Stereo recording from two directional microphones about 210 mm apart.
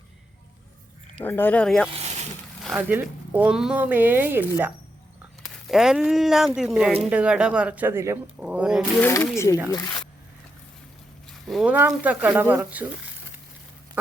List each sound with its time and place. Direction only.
1.2 s speech: 10° left (ahead or behind)
1.9 s a sound: 30° right (ahead or behind)
2.6 s speech: 5° right (ahead or behind)
9.0 s speech: 10° left (ahead or behind)
11.4 s speech: centre (ahead or behind)